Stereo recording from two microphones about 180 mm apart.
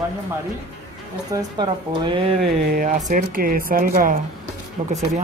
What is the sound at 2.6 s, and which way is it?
A woman's voice, 50° right (ahead or behind).